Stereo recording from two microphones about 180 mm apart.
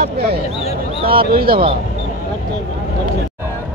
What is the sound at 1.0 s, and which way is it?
Speech, 30° right (ahead or behind).